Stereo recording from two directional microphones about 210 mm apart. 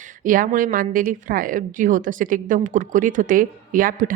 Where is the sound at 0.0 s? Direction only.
40° right (ahead or behind).